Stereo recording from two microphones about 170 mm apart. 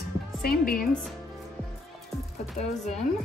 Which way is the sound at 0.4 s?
60° left (ahead or behind).